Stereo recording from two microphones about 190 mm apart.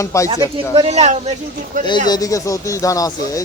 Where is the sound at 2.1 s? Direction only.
20° left (ahead or behind).